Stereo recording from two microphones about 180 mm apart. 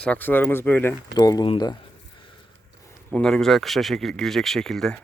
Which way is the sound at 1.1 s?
20° left (ahead or behind).